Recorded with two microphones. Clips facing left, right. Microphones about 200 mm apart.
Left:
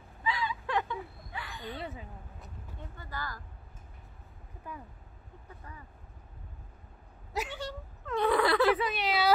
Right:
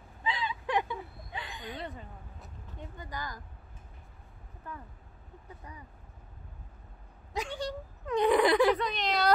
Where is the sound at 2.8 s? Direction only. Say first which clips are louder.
Right 1 dB; 15° right (ahead or behind).